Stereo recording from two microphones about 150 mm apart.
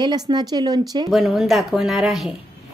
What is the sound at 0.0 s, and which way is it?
A woman's voice, 30° right (ahead or behind).